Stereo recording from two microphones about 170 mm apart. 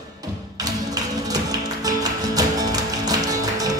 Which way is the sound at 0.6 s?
20° right (ahead or behind).